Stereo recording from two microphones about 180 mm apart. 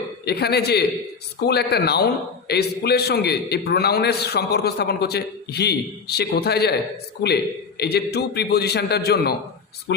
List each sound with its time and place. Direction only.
0.3 s a man's voice: 65° left (ahead or behind)